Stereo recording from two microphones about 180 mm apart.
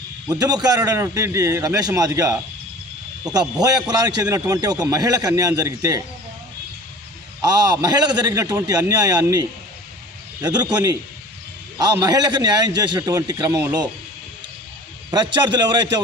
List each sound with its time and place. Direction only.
0.3 s a man's voice: 20° right (ahead or behind)
7.4 s a man's voice: 20° right (ahead or behind)
15.1 s a man's voice: 25° right (ahead or behind)